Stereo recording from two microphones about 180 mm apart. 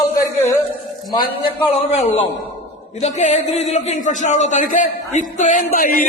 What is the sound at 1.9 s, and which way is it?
A man's voice, 40° left (ahead or behind).